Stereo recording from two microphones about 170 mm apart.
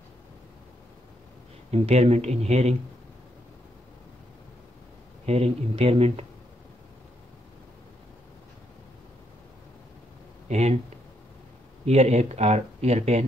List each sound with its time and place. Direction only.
1.7 s speech: 40° right (ahead or behind)
5.2 s speech: 35° right (ahead or behind)
10.5 s speech: 40° right (ahead or behind)
11.8 s speech: 40° right (ahead or behind)